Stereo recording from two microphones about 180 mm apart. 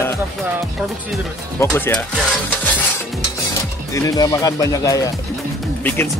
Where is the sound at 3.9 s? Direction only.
20° left (ahead or behind).